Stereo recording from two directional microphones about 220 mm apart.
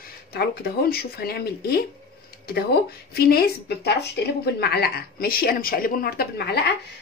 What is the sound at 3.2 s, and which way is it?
Speech, 45° left (ahead or behind).